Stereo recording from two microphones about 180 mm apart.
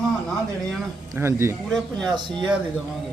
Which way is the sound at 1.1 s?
15° right (ahead or behind).